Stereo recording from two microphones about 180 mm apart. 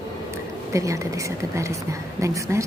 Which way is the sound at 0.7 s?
15° right (ahead or behind).